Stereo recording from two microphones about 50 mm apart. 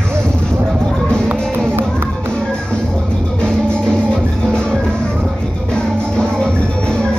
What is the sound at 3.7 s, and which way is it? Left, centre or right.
Music, centre.